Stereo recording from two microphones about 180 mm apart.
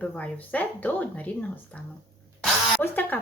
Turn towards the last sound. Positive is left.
turn(degrees=10)  # may be behind; listen again after turning